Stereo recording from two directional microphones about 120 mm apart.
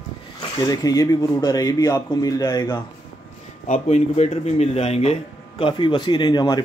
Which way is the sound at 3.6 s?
75° left (ahead or behind).